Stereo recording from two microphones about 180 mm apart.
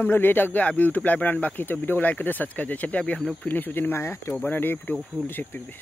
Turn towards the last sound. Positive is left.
turn(degrees=10)  # may be behind; listen again after turning